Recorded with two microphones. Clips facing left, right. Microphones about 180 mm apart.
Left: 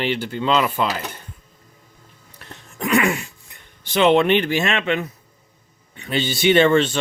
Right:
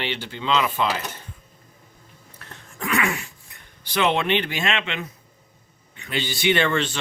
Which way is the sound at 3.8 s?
25° left (ahead or behind).